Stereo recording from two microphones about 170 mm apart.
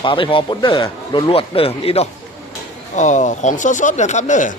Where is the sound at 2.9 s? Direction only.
45° left (ahead or behind).